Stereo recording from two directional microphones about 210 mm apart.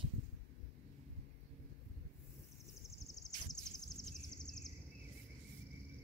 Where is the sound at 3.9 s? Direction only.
Centre (ahead or behind).